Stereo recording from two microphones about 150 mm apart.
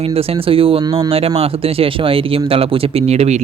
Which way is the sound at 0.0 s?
40° right (ahead or behind).